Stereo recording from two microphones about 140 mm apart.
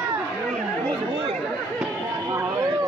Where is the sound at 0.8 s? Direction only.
40° right (ahead or behind).